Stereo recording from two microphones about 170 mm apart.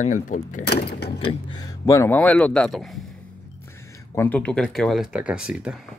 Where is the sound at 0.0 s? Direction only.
50° left (ahead or behind).